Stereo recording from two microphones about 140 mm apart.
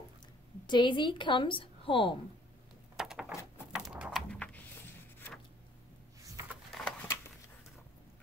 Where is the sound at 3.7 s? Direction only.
5° right (ahead or behind).